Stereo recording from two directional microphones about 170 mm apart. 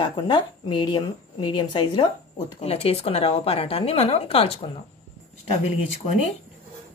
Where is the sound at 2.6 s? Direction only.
35° left (ahead or behind).